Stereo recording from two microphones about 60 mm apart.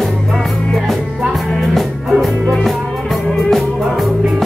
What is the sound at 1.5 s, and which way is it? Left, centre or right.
Music, centre.